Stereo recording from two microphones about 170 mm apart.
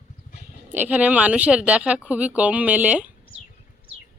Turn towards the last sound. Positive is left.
turn(degrees=-10)  # may be behind; listen again after turning